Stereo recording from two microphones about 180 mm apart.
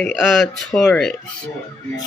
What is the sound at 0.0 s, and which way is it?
Speech, centre (ahead or behind).